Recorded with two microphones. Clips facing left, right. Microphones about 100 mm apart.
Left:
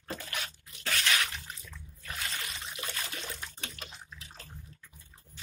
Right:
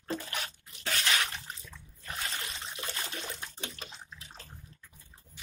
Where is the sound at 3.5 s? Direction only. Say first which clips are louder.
Right 1 dB; 25° right (ahead or behind).